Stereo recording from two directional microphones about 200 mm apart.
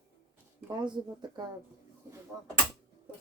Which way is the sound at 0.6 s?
20° right (ahead or behind).